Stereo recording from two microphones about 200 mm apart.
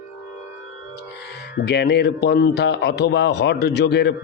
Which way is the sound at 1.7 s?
55° left (ahead or behind).